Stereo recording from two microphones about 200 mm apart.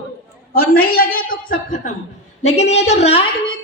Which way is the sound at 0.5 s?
50° left (ahead or behind).